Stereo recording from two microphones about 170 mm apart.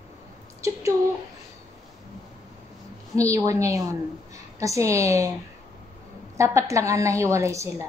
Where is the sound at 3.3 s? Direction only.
20° right (ahead or behind).